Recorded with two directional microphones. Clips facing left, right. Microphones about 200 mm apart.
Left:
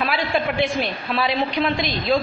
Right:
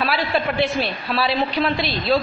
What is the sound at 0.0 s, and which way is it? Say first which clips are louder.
A man's voice: right 1 dB; 15° left (ahead or behind).